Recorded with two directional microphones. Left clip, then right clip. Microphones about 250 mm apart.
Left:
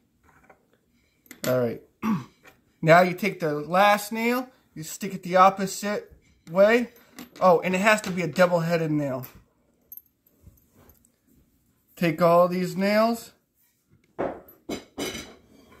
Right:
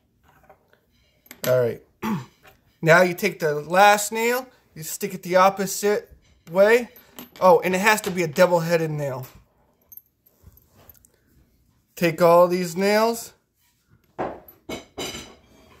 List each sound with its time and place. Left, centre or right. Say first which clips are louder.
1.5 s music: right 5 dB; right
2.8 s speech: right 1 dB; right
11.9 s speech: right 4 dB; right